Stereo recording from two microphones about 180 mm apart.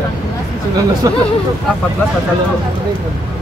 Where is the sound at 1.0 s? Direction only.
20° right (ahead or behind).